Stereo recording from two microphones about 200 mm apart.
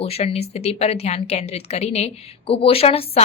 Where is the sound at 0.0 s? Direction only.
30° left (ahead or behind).